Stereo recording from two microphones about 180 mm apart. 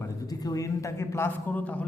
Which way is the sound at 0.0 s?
20° left (ahead or behind).